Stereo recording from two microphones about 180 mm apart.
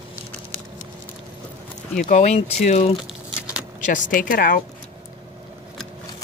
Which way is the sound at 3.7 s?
45° left (ahead or behind).